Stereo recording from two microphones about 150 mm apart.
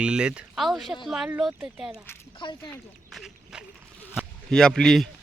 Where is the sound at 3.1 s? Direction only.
Centre (ahead or behind).